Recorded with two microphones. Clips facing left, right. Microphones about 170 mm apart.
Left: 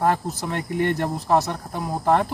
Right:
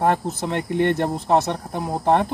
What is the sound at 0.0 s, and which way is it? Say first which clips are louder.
Speech: right 2 dB; 20° right (ahead or behind).